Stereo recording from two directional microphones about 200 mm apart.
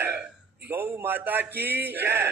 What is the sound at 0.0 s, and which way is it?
A man's voice, 10° right (ahead or behind).